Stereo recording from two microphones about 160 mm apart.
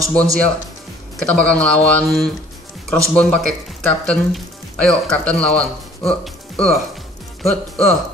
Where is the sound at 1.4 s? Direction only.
5° left (ahead or behind).